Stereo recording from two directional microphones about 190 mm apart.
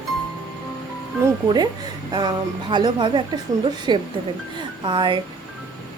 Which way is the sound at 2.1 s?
20° right (ahead or behind).